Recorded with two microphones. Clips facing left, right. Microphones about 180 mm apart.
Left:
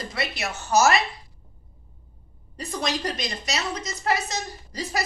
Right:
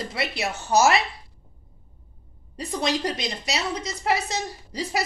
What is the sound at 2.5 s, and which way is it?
A woman's voice, 30° right (ahead or behind).